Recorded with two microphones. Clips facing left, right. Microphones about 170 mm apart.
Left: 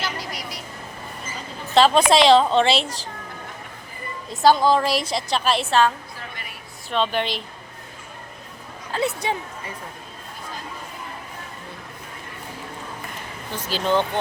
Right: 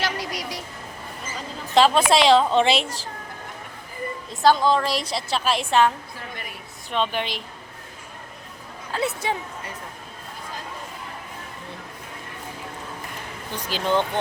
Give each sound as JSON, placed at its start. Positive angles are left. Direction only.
{"t": 0.0, "sound": "a sound", "side_deg": -80}
{"t": 1.7, "sound": "a woman's voice", "side_deg": -10}
{"t": 4.4, "sound": "a woman's voice", "side_deg": 10}
{"t": 6.9, "sound": "a woman's voice", "side_deg": -10}
{"t": 8.9, "sound": "speech", "side_deg": -5}
{"t": 13.6, "sound": "a woman's voice", "side_deg": -15}